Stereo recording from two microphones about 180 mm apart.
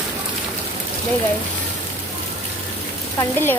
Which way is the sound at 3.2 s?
10° left (ahead or behind).